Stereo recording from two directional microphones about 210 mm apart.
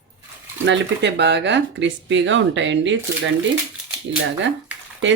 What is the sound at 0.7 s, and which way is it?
Speech, 55° right (ahead or behind).